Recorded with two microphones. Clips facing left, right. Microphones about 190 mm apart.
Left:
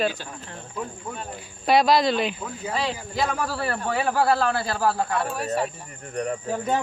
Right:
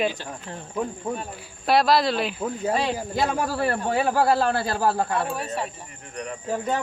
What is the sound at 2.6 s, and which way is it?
Speech, 45° right (ahead or behind).